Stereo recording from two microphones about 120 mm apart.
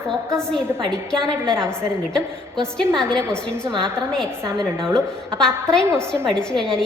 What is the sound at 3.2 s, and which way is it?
Speech, 20° right (ahead or behind).